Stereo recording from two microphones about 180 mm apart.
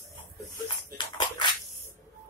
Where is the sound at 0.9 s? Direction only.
25° left (ahead or behind).